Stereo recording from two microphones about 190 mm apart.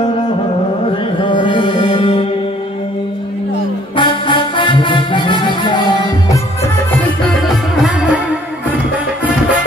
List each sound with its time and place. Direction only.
1.2 s music: 25° left (ahead or behind)
3.9 s music: 25° left (ahead or behind)
7.0 s music: centre (ahead or behind)